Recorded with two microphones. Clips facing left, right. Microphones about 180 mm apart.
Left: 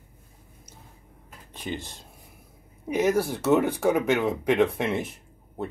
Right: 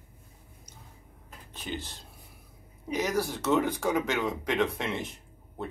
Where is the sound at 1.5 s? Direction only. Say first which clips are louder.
Left 3 dB; centre (ahead or behind).